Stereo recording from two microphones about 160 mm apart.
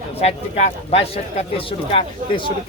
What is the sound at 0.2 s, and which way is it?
Speech, 40° left (ahead or behind).